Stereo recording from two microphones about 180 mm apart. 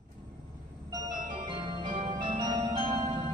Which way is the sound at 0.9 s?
25° right (ahead or behind).